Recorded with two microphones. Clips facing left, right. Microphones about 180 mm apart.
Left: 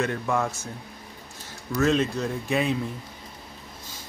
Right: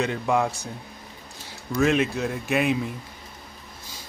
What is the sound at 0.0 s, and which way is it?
Speech, 15° right (ahead or behind).